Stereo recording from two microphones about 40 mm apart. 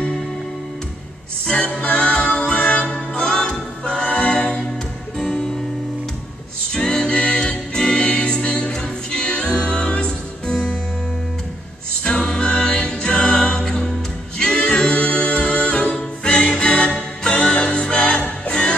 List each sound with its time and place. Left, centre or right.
1.4 s music: left
5.1 s music: centre
6.7 s music: centre
7.1 s music: left
10.5 s music: centre
12.1 s music: left